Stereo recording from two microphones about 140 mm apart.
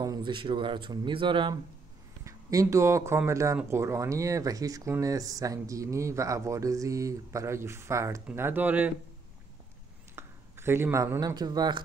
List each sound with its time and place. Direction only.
0.0 s speech: 30° right (ahead or behind)
2.2 s speech: 20° right (ahead or behind)
10.1 s speech: 15° right (ahead or behind)